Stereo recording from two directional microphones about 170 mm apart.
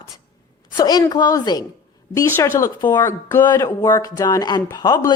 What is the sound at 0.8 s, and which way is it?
Speech, 20° left (ahead or behind).